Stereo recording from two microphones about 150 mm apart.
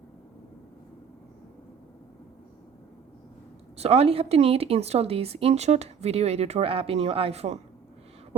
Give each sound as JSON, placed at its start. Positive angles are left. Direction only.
{"t": 3.8, "sound": "a woman's voice", "side_deg": -40}